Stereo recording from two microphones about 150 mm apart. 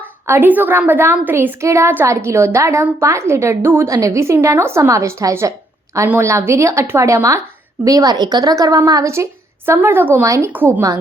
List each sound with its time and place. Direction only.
0.0 s a woman's voice: 10° right (ahead or behind)